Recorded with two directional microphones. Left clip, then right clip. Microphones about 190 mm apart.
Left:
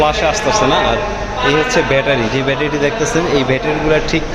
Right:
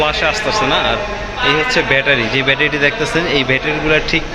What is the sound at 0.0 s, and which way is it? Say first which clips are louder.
Speech: left 2 dB; 5° left (ahead or behind).